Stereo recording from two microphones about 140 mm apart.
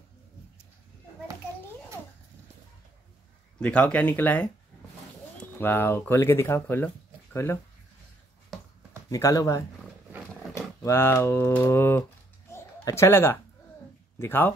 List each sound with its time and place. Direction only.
3.5 s speech: 10° left (ahead or behind)
9.1 s speech: 25° left (ahead or behind)
12.4 s a sound: 20° left (ahead or behind)
14.1 s speech: 15° left (ahead or behind)